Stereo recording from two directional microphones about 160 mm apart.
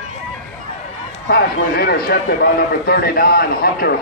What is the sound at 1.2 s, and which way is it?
Speech, 80° left.